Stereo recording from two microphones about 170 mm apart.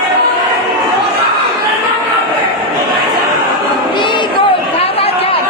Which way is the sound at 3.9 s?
30° left (ahead or behind).